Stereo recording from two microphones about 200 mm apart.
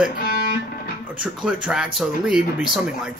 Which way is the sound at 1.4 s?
5° right (ahead or behind).